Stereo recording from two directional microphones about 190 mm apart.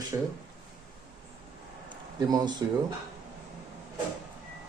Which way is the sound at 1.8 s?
20° right (ahead or behind).